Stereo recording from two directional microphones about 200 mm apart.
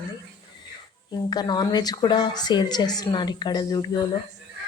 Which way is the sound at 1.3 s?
20° left (ahead or behind).